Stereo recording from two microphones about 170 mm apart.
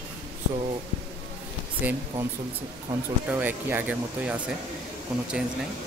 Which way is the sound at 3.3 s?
10° right (ahead or behind).